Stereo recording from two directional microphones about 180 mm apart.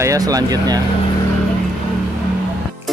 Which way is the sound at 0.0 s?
20° right (ahead or behind).